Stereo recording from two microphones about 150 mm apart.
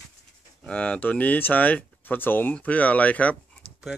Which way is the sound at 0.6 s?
10° left (ahead or behind).